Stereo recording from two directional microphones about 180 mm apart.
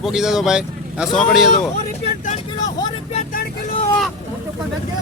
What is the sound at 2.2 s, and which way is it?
Vehicle, 45° left (ahead or behind).